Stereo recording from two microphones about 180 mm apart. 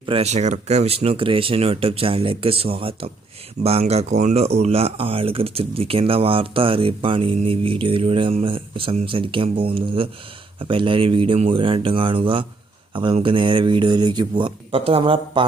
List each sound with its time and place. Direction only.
0.0 s speech: 30° right (ahead or behind)